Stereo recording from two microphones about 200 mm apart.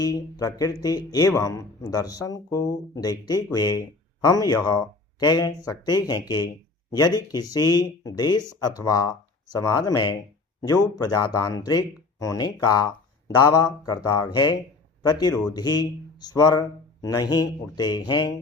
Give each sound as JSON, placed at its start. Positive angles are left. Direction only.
{"t": 0.0, "sound": "speech", "side_deg": 20}